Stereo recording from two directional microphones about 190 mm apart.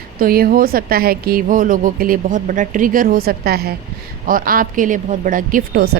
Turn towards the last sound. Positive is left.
turn(degrees=-50)  # may be behind; listen again after turning